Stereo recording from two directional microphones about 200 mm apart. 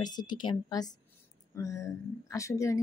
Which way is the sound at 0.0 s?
20° left (ahead or behind).